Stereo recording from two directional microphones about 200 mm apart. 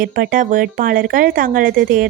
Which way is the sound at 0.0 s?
45° right (ahead or behind).